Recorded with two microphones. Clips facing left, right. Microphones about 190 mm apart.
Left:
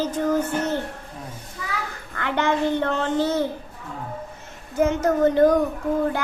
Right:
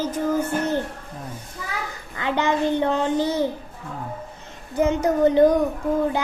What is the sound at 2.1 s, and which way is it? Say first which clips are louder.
A child's voice: even; 15° right (ahead or behind).